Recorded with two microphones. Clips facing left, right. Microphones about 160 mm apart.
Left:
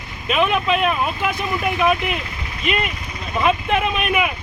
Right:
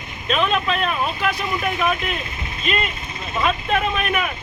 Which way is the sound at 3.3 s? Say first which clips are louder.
Left 2 dB; 15° left (ahead or behind).